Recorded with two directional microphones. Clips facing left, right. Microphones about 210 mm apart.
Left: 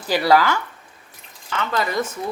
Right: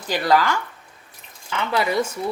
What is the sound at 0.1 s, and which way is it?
Speech, 10° left (ahead or behind).